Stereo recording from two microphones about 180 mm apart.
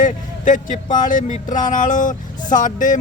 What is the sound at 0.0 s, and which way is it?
Speech, 45° left (ahead or behind).